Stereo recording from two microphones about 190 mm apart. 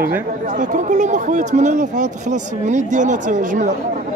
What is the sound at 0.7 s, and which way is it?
Speech, 40° right (ahead or behind).